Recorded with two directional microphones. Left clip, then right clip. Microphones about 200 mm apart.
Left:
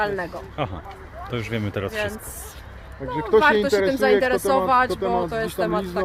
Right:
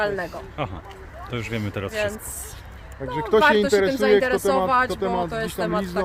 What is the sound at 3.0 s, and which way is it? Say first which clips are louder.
Speech: even; 60° right (ahead or behind).